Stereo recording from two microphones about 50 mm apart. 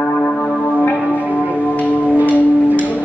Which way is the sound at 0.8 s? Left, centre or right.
Left.